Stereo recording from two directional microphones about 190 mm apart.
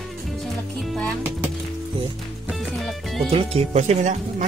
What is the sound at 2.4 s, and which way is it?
Music, centre (ahead or behind).